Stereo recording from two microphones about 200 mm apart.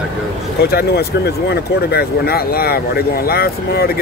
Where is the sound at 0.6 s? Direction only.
50° left (ahead or behind).